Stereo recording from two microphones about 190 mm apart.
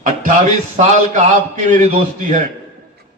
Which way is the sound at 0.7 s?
40° right (ahead or behind).